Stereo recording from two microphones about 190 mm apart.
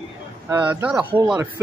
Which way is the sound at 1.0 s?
25° right (ahead or behind).